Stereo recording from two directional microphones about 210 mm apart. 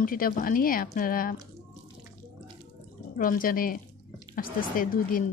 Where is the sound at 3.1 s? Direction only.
40° left (ahead or behind).